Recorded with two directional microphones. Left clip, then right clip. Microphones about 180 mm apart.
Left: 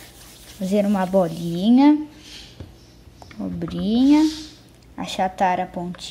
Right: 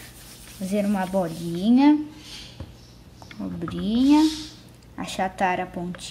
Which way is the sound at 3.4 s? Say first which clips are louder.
Left 3 dB; 15° left (ahead or behind).